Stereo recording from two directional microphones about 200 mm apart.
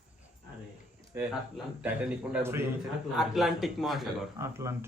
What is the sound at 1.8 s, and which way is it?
A man's voice, 5° right (ahead or behind).